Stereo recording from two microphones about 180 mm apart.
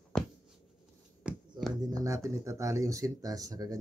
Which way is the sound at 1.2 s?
5° right (ahead or behind).